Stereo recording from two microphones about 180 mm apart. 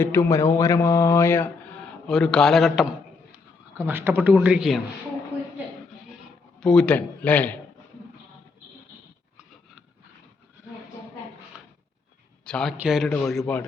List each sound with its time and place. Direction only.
0.0 s mantra: 15° left (ahead or behind)
2.0 s a man's voice: 5° left (ahead or behind)
3.8 s speech: 10° right (ahead or behind)
6.1 s bleat: centre (ahead or behind)
12.5 s a man's voice: 5° left (ahead or behind)
13.4 s mantra: 10° left (ahead or behind)